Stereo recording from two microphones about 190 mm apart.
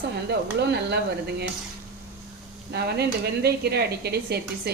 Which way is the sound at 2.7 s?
55° right (ahead or behind).